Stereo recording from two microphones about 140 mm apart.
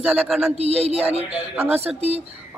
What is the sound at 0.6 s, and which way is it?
Speech, 50° right (ahead or behind).